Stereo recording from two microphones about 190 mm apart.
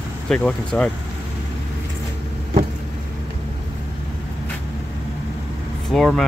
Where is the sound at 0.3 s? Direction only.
5° left (ahead or behind).